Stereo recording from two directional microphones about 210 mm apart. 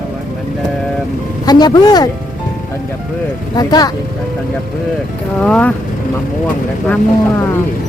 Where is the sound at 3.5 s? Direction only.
20° left (ahead or behind).